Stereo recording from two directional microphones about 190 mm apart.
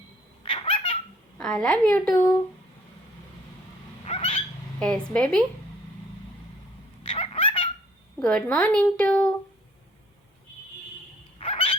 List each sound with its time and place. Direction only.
0.4 s baby laughter: 25° left (ahead or behind)
1.4 s a woman's voice: centre (ahead or behind)
4.0 s bird: 30° left (ahead or behind)
4.8 s a woman's voice: 5° left (ahead or behind)
7.0 s a sound: 30° left (ahead or behind)
8.2 s a woman's voice: 5° left (ahead or behind)
11.3 s a sound: 30° left (ahead or behind)